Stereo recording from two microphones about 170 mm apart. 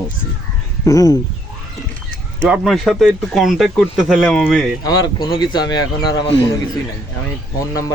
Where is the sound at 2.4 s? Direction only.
5° right (ahead or behind).